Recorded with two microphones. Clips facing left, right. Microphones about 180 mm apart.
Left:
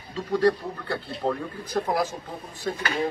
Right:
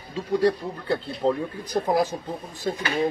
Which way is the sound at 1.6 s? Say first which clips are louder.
Right 3 dB; 20° right (ahead or behind).